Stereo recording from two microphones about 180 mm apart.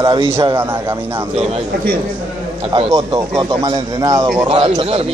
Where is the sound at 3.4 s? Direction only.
25° right (ahead or behind).